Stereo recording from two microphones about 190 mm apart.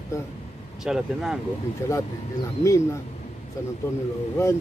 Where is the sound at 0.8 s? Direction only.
5° right (ahead or behind).